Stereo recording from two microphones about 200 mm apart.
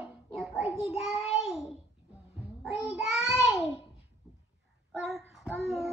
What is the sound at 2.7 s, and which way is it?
Child singing, centre (ahead or behind).